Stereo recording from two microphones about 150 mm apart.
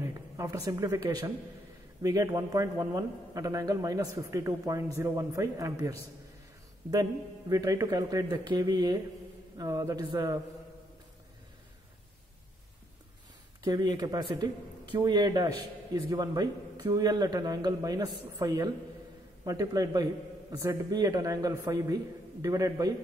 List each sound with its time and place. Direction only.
0.0 s a man's voice: 20° right (ahead or behind)
13.7 s a man's voice: 25° right (ahead or behind)